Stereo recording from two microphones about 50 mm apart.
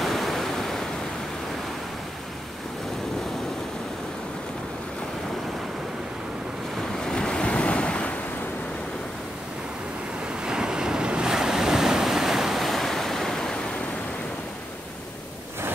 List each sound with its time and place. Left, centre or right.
0.0 s waves: centre
7.0 s waves: centre
10.2 s waves: centre